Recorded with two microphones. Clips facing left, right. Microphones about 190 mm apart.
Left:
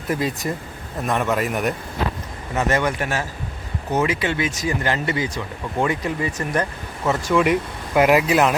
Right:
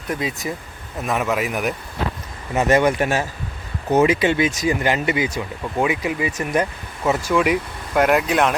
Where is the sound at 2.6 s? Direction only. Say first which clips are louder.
Right 4 dB; 15° right (ahead or behind).